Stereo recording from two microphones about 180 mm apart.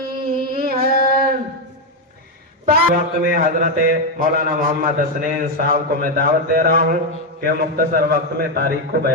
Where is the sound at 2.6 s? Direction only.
55° right (ahead or behind).